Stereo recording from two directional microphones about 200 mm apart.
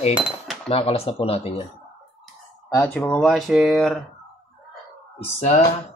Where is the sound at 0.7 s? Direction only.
30° left (ahead or behind).